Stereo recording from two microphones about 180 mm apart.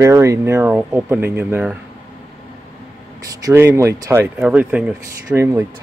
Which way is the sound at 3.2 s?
20° right (ahead or behind).